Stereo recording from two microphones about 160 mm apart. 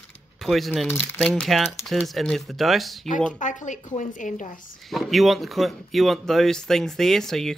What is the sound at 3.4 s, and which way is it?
A woman's voice, 50° left (ahead or behind).